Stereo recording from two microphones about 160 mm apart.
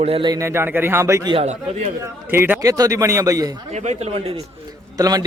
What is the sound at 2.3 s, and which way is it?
A man's voice, 10° right (ahead or behind).